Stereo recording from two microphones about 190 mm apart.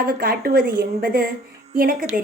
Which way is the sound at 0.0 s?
50° right (ahead or behind).